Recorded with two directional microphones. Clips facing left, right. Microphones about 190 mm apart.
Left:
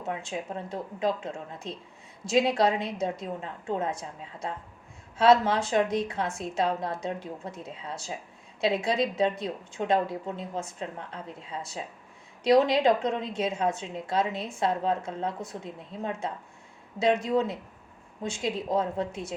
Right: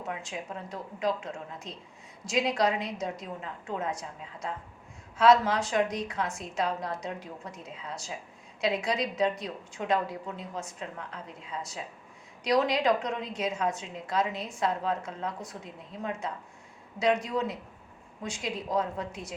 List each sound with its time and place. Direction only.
0.1 s a woman's voice: 30° left (ahead or behind)